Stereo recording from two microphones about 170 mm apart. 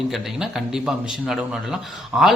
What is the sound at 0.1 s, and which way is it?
Speech, centre (ahead or behind).